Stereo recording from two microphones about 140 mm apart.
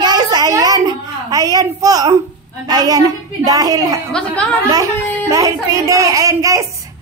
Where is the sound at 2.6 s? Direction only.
25° right (ahead or behind).